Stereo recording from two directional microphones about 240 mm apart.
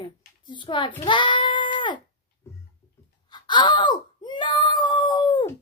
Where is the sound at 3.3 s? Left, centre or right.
Centre.